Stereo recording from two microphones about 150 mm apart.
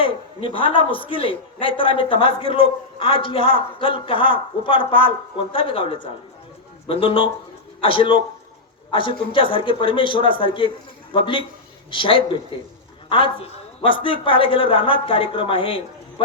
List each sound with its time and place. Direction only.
0.0 s a man's voice: 35° left (ahead or behind)